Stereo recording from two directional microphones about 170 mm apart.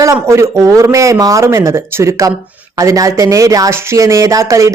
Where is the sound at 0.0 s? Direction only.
15° right (ahead or behind).